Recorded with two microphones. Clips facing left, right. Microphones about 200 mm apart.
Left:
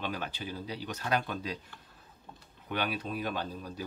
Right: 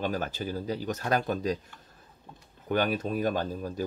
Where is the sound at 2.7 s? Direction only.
45° right (ahead or behind).